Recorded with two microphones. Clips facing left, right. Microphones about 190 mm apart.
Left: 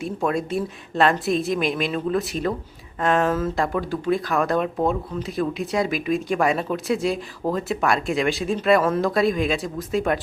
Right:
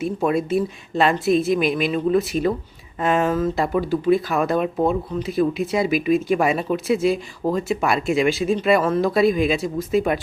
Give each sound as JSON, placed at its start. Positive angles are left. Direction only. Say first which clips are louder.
{"t": 0.0, "sound": "speech", "louder": "right 3 dB", "side_deg": -5}